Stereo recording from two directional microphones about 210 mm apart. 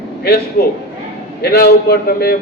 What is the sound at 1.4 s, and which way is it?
Speech, 50° left (ahead or behind).